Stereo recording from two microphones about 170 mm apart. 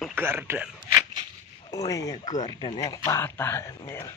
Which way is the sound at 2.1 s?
45° left (ahead or behind).